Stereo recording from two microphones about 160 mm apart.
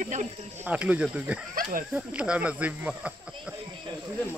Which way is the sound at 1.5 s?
60° right (ahead or behind).